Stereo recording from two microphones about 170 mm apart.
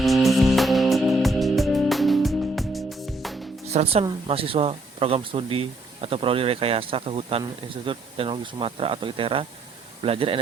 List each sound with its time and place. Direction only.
0.0 s music: centre (ahead or behind)
3.7 s speech: 40° right (ahead or behind)